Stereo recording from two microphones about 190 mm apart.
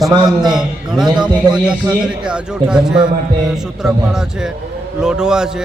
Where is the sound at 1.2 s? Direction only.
5° right (ahead or behind).